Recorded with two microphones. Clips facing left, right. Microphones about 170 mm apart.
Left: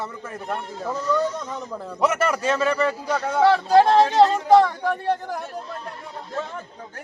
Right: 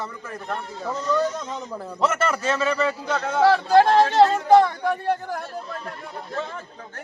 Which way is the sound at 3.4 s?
5° right (ahead or behind).